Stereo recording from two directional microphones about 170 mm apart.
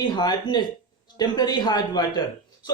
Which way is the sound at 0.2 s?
25° left (ahead or behind).